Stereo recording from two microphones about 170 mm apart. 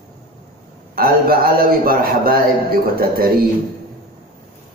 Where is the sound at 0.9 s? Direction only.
60° right (ahead or behind).